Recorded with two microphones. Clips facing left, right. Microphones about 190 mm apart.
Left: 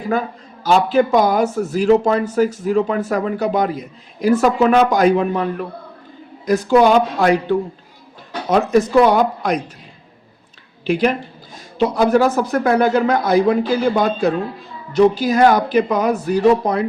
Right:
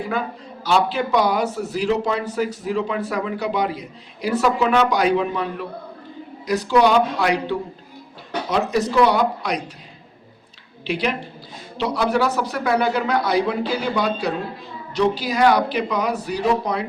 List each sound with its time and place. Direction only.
0.1 s speech: 45° left (ahead or behind)
8.7 s speech: 50° left (ahead or behind)
10.8 s speech: 50° left (ahead or behind)